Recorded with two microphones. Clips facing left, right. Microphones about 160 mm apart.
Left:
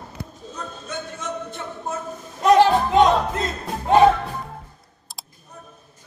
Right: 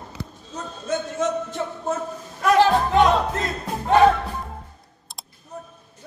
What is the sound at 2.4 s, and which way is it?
Music, 20° left (ahead or behind).